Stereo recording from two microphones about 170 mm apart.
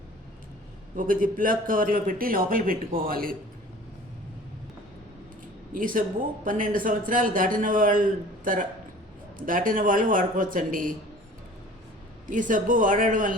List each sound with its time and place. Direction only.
0.9 s a man's voice: 55° right (ahead or behind)
5.7 s speech: 50° right (ahead or behind)
12.3 s speech: 50° right (ahead or behind)